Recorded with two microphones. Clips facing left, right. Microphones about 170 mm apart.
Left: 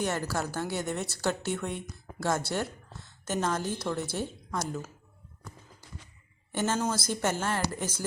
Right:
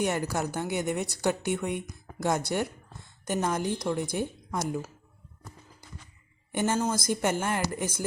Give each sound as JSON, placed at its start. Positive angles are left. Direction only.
{"t": 0.0, "sound": "a woman's voice", "side_deg": -15}
{"t": 6.5, "sound": "a woman's voice", "side_deg": -15}